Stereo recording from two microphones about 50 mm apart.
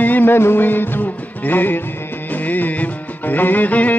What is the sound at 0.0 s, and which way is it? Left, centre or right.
Music, left.